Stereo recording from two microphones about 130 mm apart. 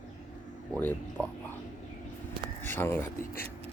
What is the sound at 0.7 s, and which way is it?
Speech, 15° left (ahead or behind).